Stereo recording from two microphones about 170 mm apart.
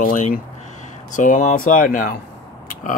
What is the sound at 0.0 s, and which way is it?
Speech, 50° left (ahead or behind).